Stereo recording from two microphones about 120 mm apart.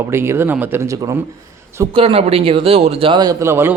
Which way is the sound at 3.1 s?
35° right (ahead or behind).